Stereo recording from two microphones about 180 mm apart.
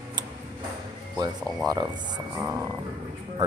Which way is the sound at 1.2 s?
20° right (ahead or behind).